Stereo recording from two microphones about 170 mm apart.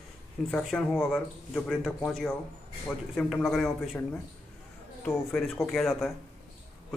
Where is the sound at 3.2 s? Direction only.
Centre (ahead or behind).